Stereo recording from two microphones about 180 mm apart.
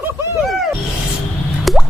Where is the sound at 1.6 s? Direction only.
Centre (ahead or behind).